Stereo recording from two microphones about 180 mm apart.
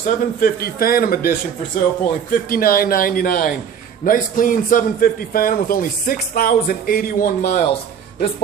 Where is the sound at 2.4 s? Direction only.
55° left (ahead or behind).